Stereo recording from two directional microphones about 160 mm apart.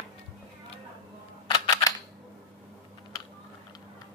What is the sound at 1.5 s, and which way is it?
Camera, 25° left (ahead or behind).